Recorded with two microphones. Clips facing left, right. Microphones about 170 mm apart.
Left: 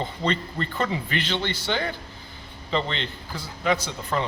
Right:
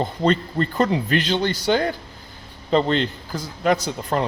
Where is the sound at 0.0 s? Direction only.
45° right (ahead or behind).